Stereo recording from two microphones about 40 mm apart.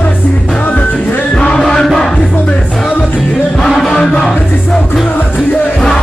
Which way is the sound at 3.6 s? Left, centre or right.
Centre.